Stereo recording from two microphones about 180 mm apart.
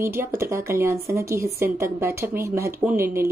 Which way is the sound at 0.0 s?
15° right (ahead or behind).